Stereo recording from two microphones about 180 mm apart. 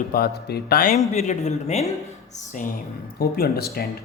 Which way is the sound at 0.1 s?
60° left (ahead or behind).